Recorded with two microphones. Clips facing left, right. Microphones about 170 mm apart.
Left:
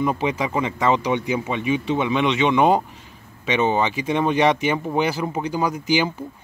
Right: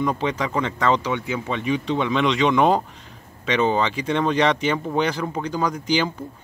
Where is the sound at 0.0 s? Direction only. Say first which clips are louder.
Left 1 dB; 10° left (ahead or behind).